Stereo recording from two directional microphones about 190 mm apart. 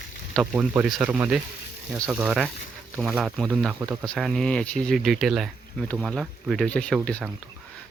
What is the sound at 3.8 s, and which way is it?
Speech, 15° right (ahead or behind).